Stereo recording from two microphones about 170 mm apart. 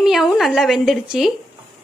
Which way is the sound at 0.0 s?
Centre (ahead or behind).